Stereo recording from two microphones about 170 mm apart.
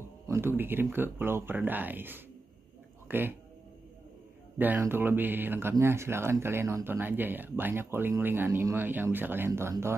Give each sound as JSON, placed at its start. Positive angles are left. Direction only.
{"t": 0.3, "sound": "speech", "side_deg": -15}
{"t": 4.6, "sound": "speech", "side_deg": -10}